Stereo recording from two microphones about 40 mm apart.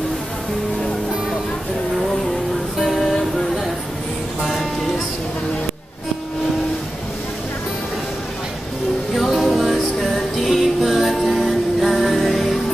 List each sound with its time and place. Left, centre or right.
2.8 s music: centre
4.4 s music: centre
9.1 s music: centre